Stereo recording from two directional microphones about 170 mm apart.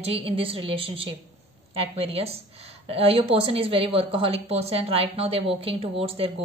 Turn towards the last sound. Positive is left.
turn(degrees=-35)  # may be behind; listen again after turning